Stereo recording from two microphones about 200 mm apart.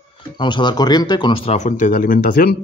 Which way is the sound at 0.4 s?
25° left (ahead or behind).